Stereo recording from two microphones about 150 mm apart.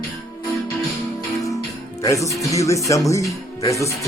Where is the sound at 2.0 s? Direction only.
20° left (ahead or behind).